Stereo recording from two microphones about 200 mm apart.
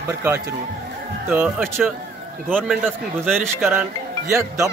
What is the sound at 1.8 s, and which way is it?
Speech, 5° right (ahead or behind).